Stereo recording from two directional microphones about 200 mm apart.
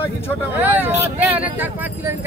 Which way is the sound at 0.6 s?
10° right (ahead or behind).